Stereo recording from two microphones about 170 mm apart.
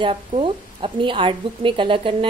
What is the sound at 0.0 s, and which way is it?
A woman's voice, 30° right (ahead or behind).